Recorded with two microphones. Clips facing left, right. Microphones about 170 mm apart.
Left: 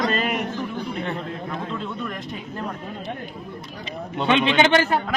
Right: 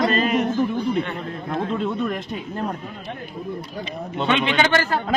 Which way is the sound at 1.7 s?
20° right (ahead or behind).